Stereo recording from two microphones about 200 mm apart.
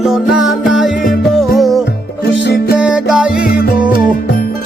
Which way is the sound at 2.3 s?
60° left (ahead or behind).